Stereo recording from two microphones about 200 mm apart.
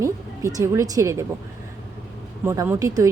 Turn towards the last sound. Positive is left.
turn(degrees=-15)  # may be behind; listen again after turning